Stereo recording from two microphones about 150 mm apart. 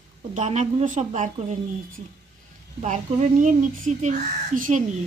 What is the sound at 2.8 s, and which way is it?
Speech, 50° right (ahead or behind).